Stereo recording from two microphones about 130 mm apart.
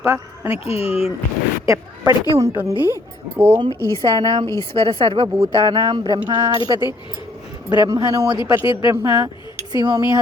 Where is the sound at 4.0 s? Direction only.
30° right (ahead or behind).